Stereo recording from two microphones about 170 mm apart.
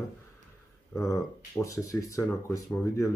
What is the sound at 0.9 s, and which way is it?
Speech, 15° left (ahead or behind).